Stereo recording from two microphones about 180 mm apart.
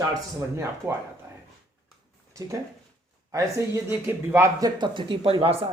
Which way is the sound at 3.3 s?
20° right (ahead or behind).